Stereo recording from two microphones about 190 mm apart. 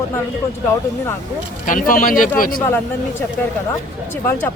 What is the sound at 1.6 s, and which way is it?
Speech, 45° left (ahead or behind).